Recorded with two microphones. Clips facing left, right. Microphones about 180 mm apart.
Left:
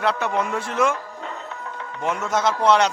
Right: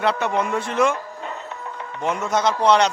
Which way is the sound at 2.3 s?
5° left (ahead or behind).